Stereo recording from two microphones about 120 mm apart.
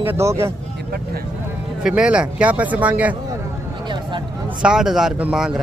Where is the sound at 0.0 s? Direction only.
20° right (ahead or behind).